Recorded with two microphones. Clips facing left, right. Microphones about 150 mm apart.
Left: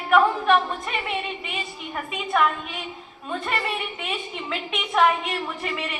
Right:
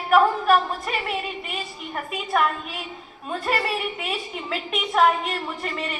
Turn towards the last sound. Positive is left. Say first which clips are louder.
# even
turn(degrees=0)  # may be behind; listen again after turning